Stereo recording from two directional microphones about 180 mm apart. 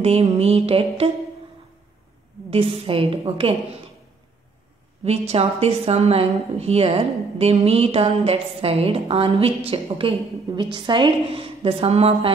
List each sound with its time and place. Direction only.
0.0 s a woman's voice: 35° right (ahead or behind)
2.5 s a woman's voice: 30° right (ahead or behind)
5.0 s a woman's voice: 35° right (ahead or behind)